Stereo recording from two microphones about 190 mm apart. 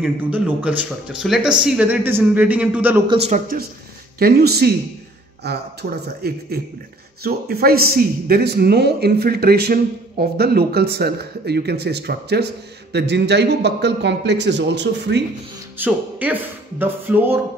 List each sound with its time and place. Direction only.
0.0 s speech: 10° right (ahead or behind)
3.1 s speech: 35° right (ahead or behind)
4.2 s speech: 55° right (ahead or behind)
15.8 s speech: 10° right (ahead or behind)